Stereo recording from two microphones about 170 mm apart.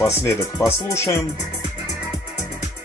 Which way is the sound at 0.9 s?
15° left (ahead or behind).